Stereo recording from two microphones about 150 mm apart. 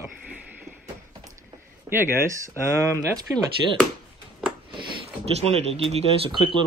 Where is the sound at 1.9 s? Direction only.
20° right (ahead or behind).